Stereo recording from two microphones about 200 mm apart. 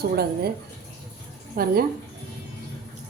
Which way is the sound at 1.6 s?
45° right (ahead or behind).